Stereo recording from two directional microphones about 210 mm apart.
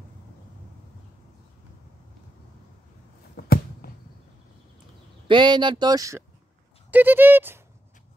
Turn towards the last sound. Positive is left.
turn(degrees=-10)  # may be behind; listen again after turning